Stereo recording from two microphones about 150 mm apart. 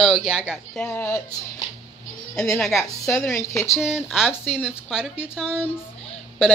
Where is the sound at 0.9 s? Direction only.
20° left (ahead or behind).